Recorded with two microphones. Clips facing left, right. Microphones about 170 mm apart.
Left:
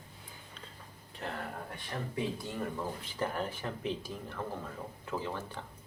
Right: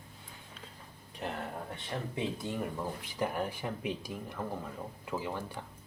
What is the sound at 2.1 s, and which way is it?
Speech, 20° right (ahead or behind).